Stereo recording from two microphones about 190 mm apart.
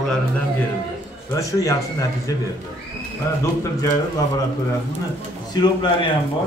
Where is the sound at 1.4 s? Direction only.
15° left (ahead or behind).